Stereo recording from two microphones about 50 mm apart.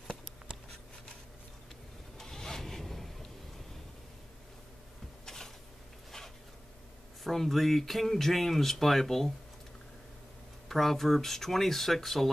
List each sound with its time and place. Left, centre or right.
2.1 s rub: centre
5.2 s a sound: centre
7.2 s speech: centre
10.7 s speech: centre